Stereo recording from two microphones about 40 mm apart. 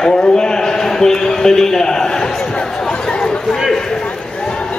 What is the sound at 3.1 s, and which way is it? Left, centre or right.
Chatter, centre.